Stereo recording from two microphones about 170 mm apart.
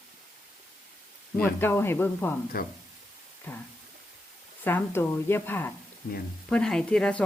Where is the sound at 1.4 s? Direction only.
10° left (ahead or behind).